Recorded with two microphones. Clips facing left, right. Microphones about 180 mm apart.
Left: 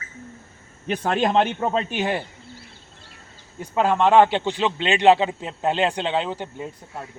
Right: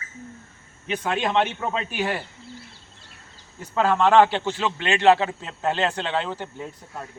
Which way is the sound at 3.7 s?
15° left (ahead or behind).